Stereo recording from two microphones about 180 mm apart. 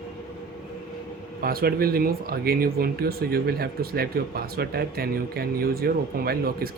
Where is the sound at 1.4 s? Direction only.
55° right (ahead or behind).